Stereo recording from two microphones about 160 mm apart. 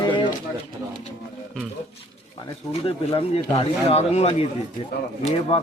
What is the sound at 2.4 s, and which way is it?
Speech, 40° left (ahead or behind).